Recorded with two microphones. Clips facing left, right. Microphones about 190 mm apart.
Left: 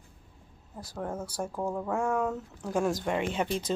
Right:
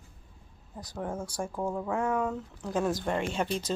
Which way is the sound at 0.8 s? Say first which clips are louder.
Even; 5° left (ahead or behind).